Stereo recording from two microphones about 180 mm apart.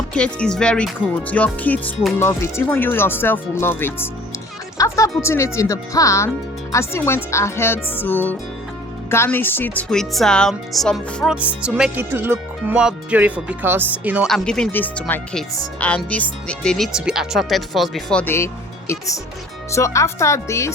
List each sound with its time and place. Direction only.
0.1 s speech: 5° left (ahead or behind)
14.3 s speech: centre (ahead or behind)